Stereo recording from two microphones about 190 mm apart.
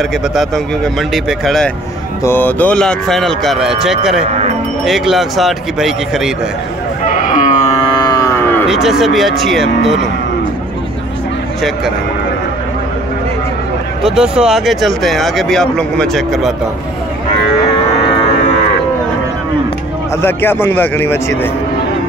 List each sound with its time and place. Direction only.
1.1 s speech: centre (ahead or behind)
7.3 s a sound: 40° left (ahead or behind); by 8.5 s 20° left (ahead or behind)
8.6 s speech: centre (ahead or behind)
14.0 s speech: 5° right (ahead or behind)
20.2 s a man's voice: 10° left (ahead or behind)